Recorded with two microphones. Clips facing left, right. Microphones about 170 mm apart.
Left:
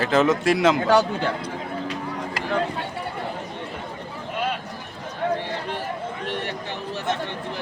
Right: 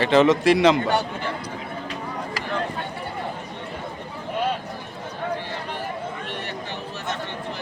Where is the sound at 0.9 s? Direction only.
90° left.